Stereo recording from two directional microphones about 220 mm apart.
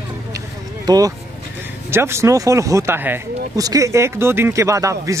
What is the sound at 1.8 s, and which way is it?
Speech, 10° right (ahead or behind).